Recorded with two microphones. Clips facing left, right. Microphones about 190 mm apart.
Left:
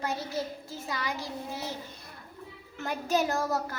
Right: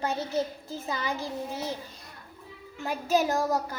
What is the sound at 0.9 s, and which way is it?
Speech, 25° right (ahead or behind).